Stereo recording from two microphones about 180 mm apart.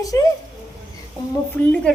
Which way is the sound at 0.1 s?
20° left (ahead or behind).